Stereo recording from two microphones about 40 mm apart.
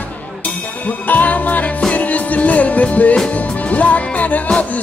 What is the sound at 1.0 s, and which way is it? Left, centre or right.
Music, left.